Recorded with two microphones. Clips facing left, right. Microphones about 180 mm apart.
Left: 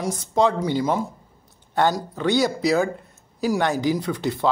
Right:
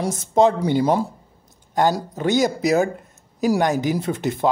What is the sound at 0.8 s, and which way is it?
Speech, 30° right (ahead or behind).